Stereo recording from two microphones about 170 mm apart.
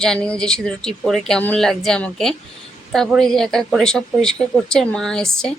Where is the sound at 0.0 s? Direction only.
5° left (ahead or behind).